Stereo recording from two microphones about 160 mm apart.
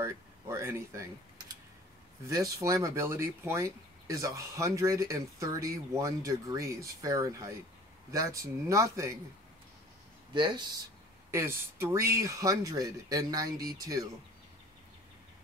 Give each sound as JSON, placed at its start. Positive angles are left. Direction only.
{"t": 0.0, "sound": "speech", "side_deg": -15}
{"t": 2.2, "sound": "speech", "side_deg": -20}
{"t": 10.3, "sound": "speech", "side_deg": -30}
{"t": 11.3, "sound": "speech", "side_deg": -15}